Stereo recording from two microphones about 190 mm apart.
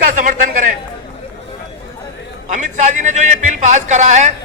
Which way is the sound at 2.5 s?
40° right (ahead or behind).